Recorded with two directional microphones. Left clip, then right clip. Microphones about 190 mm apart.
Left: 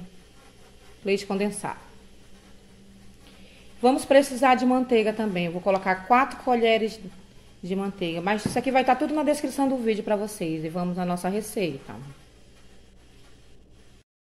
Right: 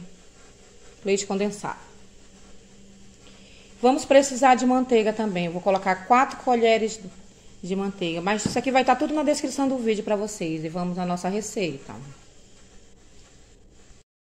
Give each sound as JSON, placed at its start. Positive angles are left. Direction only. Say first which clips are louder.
{"t": 1.0, "sound": "a woman's voice", "louder": "right 1 dB", "side_deg": 0}
{"t": 3.8, "sound": "a woman's voice", "louder": "right 1 dB", "side_deg": -5}